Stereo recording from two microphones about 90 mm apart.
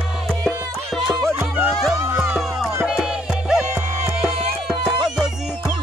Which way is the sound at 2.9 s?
5° right (ahead or behind).